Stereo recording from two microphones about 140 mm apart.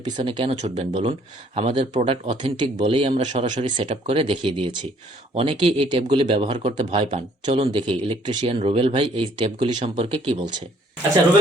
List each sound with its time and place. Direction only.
0.0 s speech: 40° right (ahead or behind)
2.4 s speech: 35° right (ahead or behind)
3.2 s speech: 55° right (ahead or behind)
7.5 s speech: 40° right (ahead or behind)